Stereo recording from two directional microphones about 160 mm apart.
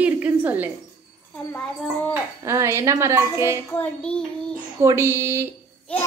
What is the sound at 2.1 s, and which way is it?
A woman's voice, 15° right (ahead or behind).